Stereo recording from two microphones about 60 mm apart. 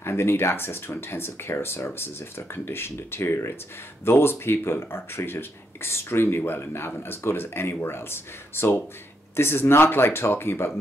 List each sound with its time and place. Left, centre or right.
0.0 s speech: left